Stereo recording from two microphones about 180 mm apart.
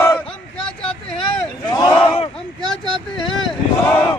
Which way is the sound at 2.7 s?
5° left (ahead or behind).